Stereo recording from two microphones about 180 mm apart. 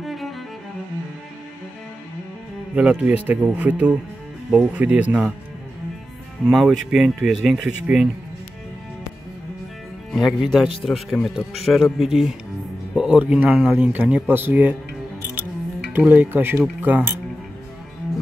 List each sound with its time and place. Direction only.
0.0 s music: centre (ahead or behind)
2.7 s speech: 5° right (ahead or behind)
6.4 s speech: centre (ahead or behind)
10.1 s speech: centre (ahead or behind)
16.0 s speech: 10° right (ahead or behind)